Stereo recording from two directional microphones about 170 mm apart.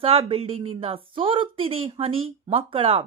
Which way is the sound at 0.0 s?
35° right (ahead or behind).